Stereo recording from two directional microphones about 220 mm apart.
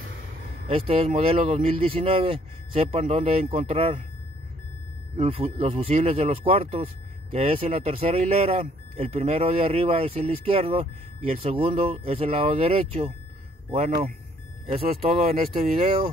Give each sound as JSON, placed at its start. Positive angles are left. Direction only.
{"t": 0.7, "sound": "speech", "side_deg": -25}
{"t": 5.1, "sound": "speech", "side_deg": -25}